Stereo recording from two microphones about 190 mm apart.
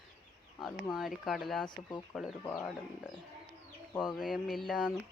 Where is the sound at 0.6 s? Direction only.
Centre (ahead or behind).